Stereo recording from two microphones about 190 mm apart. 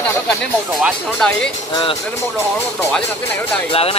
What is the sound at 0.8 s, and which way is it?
Speech, 5° left (ahead or behind).